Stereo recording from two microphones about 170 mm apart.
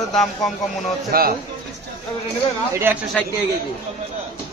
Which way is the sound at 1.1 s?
60° right (ahead or behind).